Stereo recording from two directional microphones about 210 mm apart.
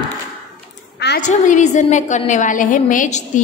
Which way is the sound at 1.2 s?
35° left (ahead or behind).